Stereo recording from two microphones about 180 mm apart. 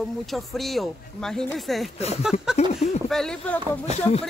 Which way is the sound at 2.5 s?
35° left (ahead or behind).